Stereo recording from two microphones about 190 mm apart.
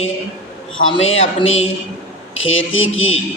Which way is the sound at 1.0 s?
90° left.